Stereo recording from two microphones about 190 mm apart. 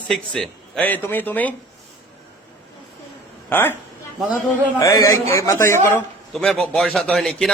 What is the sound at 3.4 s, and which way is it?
Speech, 10° left (ahead or behind).